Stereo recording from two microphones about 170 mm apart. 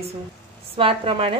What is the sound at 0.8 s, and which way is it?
Speech, 30° right (ahead or behind).